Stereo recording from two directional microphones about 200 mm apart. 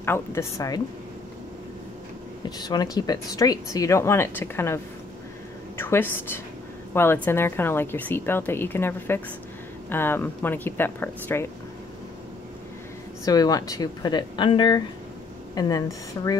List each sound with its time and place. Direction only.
0.0 s a woman's voice: 10° left (ahead or behind)
2.6 s a woman's voice: 20° left (ahead or behind)
5.8 s a woman's voice: 10° left (ahead or behind)
13.2 s speech: 20° left (ahead or behind)